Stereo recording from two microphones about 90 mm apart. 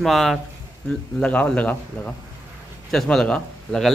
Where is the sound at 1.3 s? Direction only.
15° left (ahead or behind).